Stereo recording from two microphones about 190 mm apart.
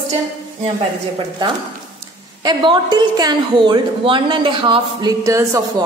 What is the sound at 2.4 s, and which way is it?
A woman's voice, 20° right (ahead or behind).